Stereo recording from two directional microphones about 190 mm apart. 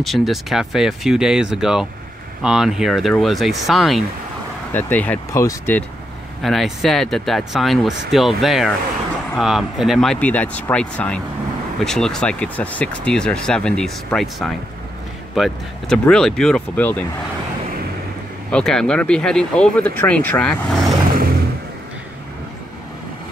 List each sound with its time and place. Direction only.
0.0 s speech: centre (ahead or behind)
6.4 s speech: centre (ahead or behind)
18.5 s speech: 5° left (ahead or behind)
21.1 s vehicle: 50° right (ahead or behind)